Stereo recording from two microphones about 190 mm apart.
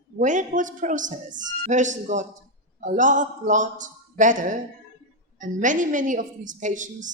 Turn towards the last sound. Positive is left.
turn(degrees=-40)  # may be behind; listen again after turning